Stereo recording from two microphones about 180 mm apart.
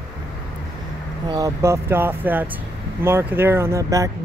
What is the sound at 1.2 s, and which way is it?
Speech, 20° right (ahead or behind).